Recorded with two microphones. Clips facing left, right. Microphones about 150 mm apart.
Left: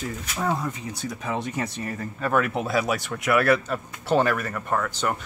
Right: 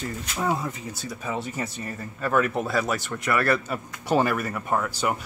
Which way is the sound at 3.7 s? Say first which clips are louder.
Left 1 dB; 5° right (ahead or behind).